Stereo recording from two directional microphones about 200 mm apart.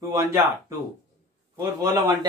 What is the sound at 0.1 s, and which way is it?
Speech, 15° right (ahead or behind).